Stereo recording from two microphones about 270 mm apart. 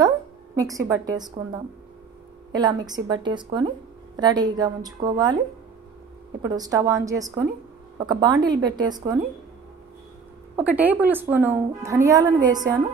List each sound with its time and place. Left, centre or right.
0.6 s a woman's voice: centre
6.4 s a woman's voice: centre
10.5 s a woman's voice: centre